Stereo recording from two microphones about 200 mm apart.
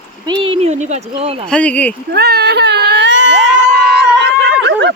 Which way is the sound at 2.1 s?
55° right (ahead or behind).